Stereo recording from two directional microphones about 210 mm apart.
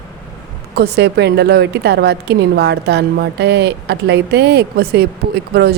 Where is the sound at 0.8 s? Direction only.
50° right (ahead or behind).